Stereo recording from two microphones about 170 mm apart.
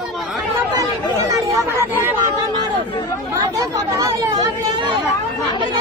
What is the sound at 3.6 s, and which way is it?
Chatter, 20° right (ahead or behind).